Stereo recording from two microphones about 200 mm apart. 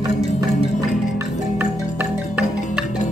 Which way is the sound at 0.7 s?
Centre (ahead or behind).